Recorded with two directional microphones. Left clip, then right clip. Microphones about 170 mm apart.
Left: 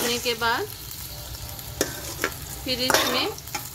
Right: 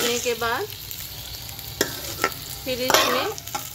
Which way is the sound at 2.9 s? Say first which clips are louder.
Right 6 dB; 20° right (ahead or behind).